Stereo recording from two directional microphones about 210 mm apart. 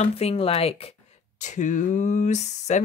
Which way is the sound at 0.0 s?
30° left (ahead or behind).